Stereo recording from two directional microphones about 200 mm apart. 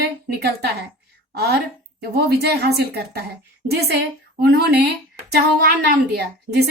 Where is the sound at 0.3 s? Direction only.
55° right (ahead or behind).